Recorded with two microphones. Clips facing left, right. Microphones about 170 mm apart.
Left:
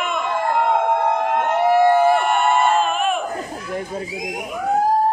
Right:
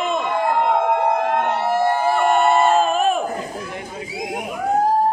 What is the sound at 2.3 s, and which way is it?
Battle cry, 40° right (ahead or behind).